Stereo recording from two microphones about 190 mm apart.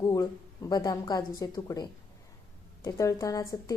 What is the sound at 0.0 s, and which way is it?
A woman's voice, 20° left (ahead or behind).